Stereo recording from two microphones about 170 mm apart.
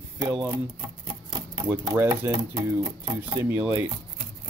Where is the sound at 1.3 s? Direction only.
25° right (ahead or behind).